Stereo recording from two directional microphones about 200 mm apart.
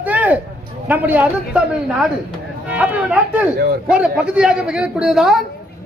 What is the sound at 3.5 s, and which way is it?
Speech, 50° right (ahead or behind).